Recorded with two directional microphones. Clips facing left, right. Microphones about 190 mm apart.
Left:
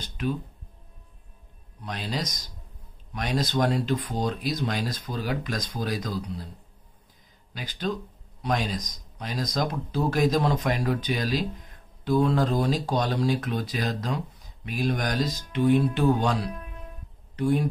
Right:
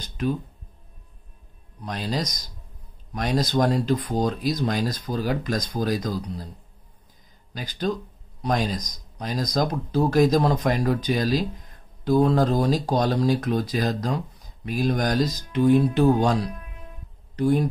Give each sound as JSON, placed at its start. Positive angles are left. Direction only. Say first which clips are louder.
{"t": 0.2, "sound": "speech", "louder": "right 3 dB", "side_deg": -40}
{"t": 1.9, "sound": "speech", "louder": "right 4 dB", "side_deg": -40}
{"t": 7.5, "sound": "speech", "louder": "right 3 dB", "side_deg": -40}